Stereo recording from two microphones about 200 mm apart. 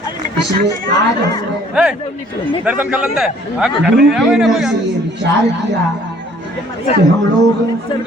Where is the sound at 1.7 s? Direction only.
5° right (ahead or behind).